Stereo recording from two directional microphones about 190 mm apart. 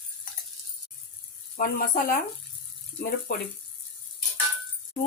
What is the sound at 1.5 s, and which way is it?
Speech, 50° left (ahead or behind).